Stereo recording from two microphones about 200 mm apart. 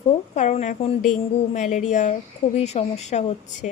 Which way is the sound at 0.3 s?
35° left (ahead or behind).